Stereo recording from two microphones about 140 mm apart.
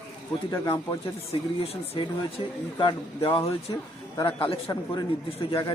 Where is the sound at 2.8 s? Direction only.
40° left (ahead or behind).